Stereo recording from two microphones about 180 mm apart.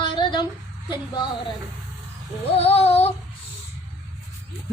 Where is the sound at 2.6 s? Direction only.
35° left (ahead or behind).